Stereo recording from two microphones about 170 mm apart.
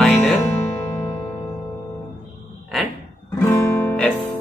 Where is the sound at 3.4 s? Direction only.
15° left (ahead or behind).